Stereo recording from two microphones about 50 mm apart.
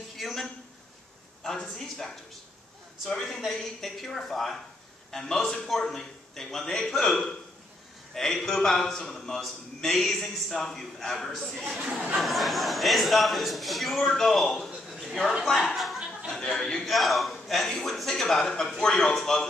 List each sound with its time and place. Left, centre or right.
0.2 s a sound: centre
1.4 s a man's voice: centre
11.8 s speech: centre
12.2 s a man's voice: centre
14.9 s a sound: centre
15.4 s a man's voice: centre